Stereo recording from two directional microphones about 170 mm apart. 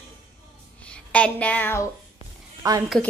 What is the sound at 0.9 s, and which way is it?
Speech, 5° left (ahead or behind).